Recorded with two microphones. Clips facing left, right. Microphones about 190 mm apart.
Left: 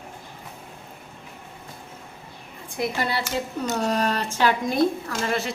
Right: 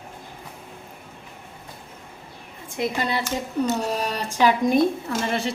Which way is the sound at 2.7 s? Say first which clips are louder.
Right 1 dB; 20° right (ahead or behind).